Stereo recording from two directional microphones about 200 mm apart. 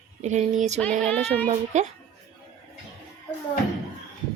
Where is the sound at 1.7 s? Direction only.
35° right (ahead or behind).